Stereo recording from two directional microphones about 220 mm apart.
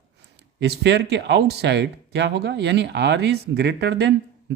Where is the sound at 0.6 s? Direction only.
50° right (ahead or behind).